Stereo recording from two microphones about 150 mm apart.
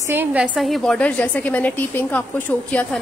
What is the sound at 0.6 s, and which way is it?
A woman's voice, centre (ahead or behind).